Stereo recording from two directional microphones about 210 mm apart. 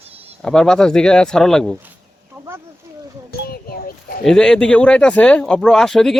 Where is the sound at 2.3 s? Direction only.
5° right (ahead or behind).